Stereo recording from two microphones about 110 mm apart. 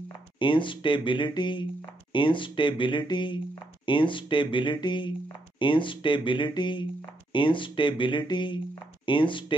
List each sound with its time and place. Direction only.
0.4 s speech: 50° left (ahead or behind)